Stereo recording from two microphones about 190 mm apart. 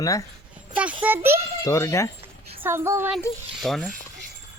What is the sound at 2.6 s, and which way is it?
Speech, 10° right (ahead or behind).